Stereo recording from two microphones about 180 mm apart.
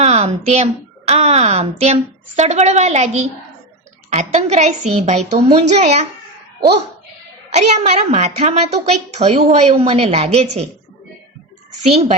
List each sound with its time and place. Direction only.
0.0 s a woman's voice: 35° right (ahead or behind)
7.5 s a woman's voice: 40° right (ahead or behind)
11.8 s a woman's voice: 35° right (ahead or behind)